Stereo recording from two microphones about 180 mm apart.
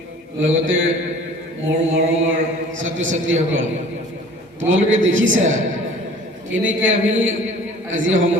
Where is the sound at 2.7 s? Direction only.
90° right.